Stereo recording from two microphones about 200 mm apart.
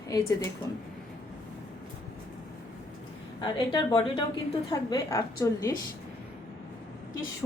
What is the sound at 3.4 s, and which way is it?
A woman's voice, 25° left (ahead or behind).